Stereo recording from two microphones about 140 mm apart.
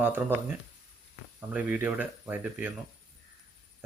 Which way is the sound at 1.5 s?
10° right (ahead or behind).